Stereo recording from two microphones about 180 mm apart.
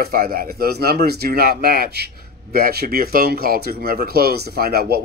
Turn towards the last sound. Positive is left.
turn(degrees=-60)  # may be behind; listen again after turning